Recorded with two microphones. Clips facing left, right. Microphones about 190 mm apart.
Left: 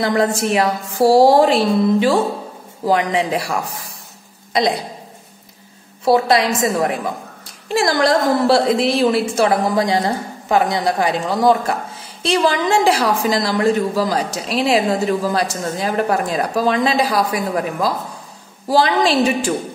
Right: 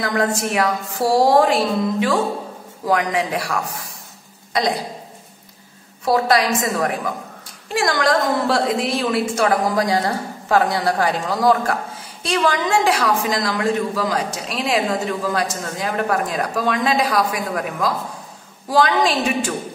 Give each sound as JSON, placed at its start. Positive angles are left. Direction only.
{"t": 0.0, "sound": "a woman's voice", "side_deg": 25}
{"t": 6.0, "sound": "a woman's voice", "side_deg": 25}